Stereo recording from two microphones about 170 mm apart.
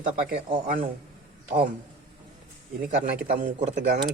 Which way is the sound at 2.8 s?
55° right (ahead or behind).